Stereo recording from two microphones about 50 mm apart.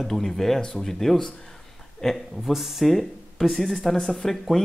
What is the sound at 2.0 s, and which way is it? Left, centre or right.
Speech, centre.